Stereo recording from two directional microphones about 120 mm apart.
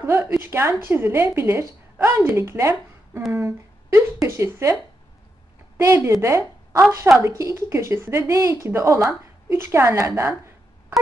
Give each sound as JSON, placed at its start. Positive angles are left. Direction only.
{"t": 0.2, "sound": "a woman's voice", "side_deg": -20}
{"t": 5.8, "sound": "a woman's voice", "side_deg": -25}